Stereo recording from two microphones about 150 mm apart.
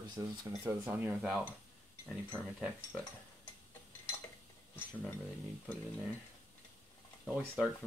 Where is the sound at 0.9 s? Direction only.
10° right (ahead or behind).